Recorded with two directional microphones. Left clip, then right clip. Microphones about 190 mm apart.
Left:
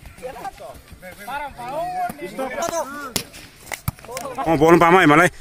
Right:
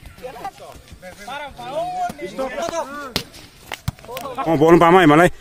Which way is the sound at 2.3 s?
20° left (ahead or behind).